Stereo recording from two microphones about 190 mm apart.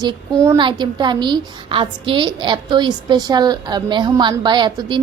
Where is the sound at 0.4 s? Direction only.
25° right (ahead or behind).